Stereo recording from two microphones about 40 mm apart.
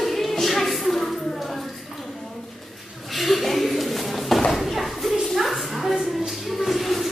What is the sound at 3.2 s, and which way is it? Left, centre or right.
Chuckle, centre.